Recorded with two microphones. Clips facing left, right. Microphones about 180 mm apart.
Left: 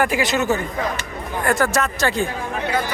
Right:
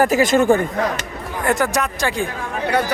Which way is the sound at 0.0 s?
45° right (ahead or behind).